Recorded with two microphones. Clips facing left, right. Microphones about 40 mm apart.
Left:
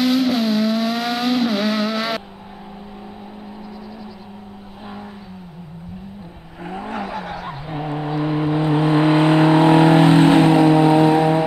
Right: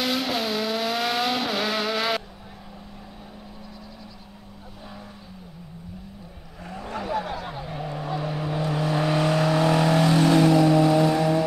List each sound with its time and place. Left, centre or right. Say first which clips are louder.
0.0 s vehicle: left 8 dB; centre
6.6 s vehicle: left 6 dB; left
7.1 s vehicle: even; centre; by 11.4 s left